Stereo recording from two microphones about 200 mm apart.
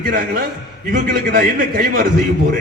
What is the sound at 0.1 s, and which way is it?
A man's voice, 45° right (ahead or behind).